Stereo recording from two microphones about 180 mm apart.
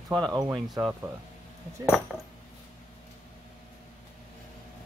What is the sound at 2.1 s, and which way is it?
Speech, centre (ahead or behind).